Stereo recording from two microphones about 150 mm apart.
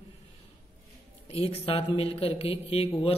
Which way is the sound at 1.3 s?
40° left (ahead or behind).